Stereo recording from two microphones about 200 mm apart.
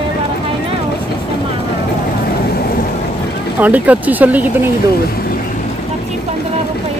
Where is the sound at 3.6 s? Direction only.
10° right (ahead or behind).